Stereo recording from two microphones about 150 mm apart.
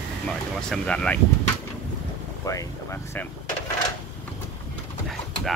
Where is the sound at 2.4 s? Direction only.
20° left (ahead or behind).